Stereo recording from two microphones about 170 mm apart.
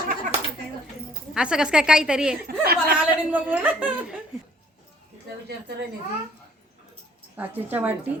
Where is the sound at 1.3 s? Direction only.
5° right (ahead or behind).